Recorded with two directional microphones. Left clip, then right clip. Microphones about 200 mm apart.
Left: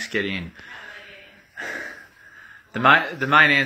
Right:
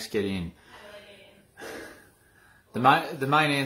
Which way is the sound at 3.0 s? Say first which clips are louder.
Left 8 dB; centre (ahead or behind).